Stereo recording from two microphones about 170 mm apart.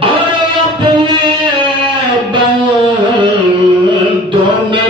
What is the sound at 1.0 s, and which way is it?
Music, 25° right (ahead or behind).